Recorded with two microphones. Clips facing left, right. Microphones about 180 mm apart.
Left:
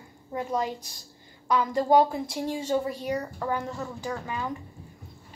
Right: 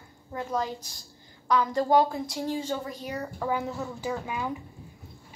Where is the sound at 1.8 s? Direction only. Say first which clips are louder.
Left 2 dB; 20° left (ahead or behind).